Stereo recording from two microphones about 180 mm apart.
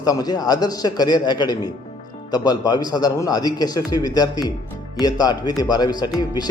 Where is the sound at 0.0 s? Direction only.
20° left (ahead or behind).